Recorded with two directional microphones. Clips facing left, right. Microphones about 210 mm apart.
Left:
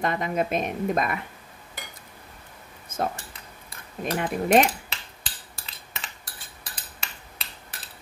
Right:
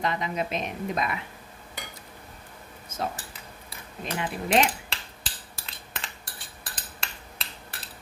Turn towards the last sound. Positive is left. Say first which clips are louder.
# right 1 dB
turn(degrees=0)  # may be behind; listen again after turning